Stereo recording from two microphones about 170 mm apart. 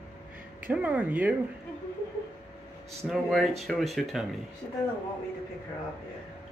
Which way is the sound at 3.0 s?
Centre (ahead or behind).